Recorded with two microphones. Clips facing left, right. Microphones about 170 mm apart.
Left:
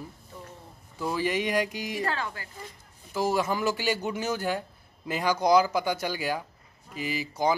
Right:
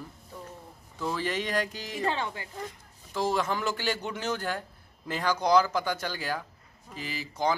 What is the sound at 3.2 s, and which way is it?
Speech, 10° left (ahead or behind).